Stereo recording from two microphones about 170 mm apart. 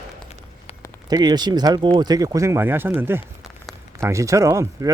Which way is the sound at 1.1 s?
25° right (ahead or behind).